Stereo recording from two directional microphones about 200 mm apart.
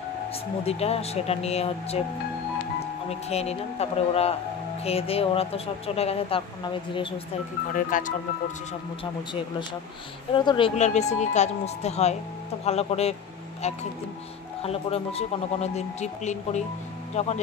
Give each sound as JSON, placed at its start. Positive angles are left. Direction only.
{"t": 0.7, "sound": "speech", "side_deg": 30}
{"t": 3.1, "sound": "a woman's voice", "side_deg": 30}
{"t": 7.7, "sound": "speech", "side_deg": 40}
{"t": 10.3, "sound": "a woman's voice", "side_deg": 25}
{"t": 10.8, "sound": "speech", "side_deg": 35}
{"t": 14.6, "sound": "speech", "side_deg": 30}